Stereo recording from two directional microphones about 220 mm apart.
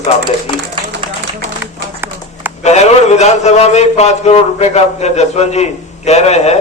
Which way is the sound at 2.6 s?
30° left (ahead or behind).